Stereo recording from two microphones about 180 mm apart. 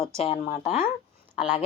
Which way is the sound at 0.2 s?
35° left (ahead or behind).